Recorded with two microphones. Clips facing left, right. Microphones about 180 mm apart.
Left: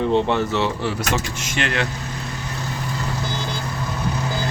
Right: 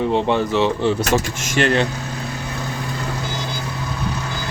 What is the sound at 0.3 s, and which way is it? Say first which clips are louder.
Speech: right 3 dB; 20° right (ahead or behind).